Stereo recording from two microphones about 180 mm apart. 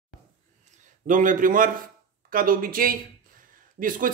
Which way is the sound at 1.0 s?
45° right (ahead or behind).